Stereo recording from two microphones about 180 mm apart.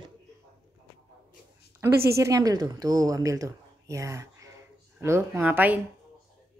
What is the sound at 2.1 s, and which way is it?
A woman's voice, 15° right (ahead or behind).